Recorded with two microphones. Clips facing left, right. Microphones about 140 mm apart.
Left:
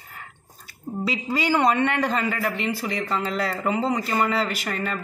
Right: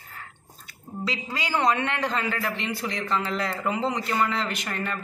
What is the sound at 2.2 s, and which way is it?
A man's voice, 5° left (ahead or behind).